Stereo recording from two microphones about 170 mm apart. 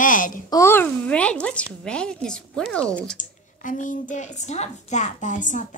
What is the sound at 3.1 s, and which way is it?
A woman's voice, 50° left (ahead or behind).